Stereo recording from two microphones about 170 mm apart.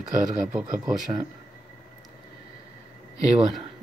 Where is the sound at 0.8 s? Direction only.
5° right (ahead or behind).